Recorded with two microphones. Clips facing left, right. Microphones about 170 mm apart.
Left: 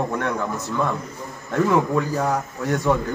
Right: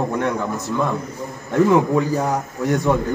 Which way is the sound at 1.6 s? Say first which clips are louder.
Right 2 dB; 15° right (ahead or behind).